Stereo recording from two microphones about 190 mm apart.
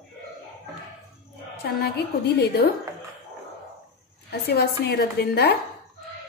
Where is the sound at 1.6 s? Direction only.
60° left (ahead or behind).